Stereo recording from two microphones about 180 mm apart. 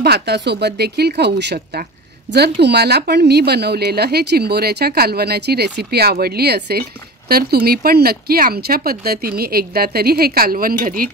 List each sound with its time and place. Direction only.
0.0 s speech: 65° right (ahead or behind)